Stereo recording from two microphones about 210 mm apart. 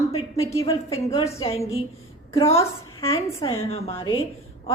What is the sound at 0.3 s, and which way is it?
Speech, 15° left (ahead or behind).